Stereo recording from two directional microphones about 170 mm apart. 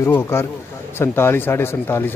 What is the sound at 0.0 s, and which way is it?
Speech, 15° left (ahead or behind).